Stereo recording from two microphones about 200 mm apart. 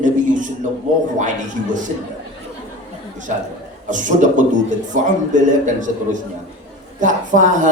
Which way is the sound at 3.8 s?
40° right (ahead or behind).